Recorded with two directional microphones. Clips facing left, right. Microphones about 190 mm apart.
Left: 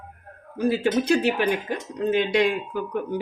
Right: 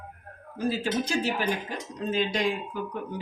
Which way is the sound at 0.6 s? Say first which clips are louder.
Left 6 dB; 65° left (ahead or behind).